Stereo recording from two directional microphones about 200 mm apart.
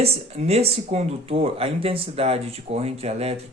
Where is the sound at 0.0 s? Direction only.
30° right (ahead or behind).